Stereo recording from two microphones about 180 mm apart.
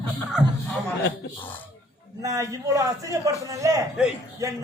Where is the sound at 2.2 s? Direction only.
20° right (ahead or behind).